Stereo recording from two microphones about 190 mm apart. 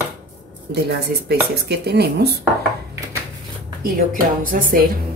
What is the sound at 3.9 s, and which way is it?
Speech, 45° right (ahead or behind).